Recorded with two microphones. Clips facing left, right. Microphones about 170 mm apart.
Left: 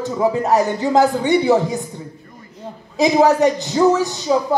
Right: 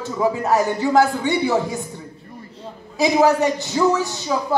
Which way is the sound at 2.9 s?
20° left (ahead or behind).